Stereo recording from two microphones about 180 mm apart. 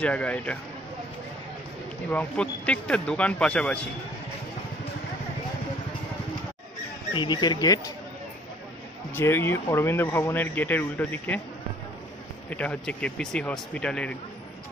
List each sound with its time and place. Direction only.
0.0 s speech: 5° left (ahead or behind)
2.0 s speech: 5° left (ahead or behind)
7.2 s speech: 25° left (ahead or behind)
9.1 s speech: 10° left (ahead or behind)
12.4 s speech: 5° left (ahead or behind)